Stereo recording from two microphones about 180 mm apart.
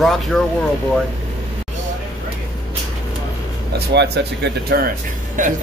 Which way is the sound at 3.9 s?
70° right (ahead or behind).